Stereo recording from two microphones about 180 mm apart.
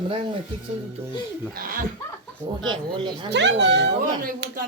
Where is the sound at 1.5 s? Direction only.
50° right (ahead or behind).